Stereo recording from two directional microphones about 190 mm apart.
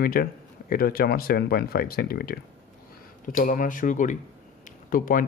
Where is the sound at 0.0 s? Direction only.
50° left (ahead or behind).